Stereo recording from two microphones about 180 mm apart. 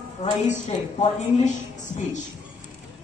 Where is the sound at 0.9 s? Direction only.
40° left (ahead or behind).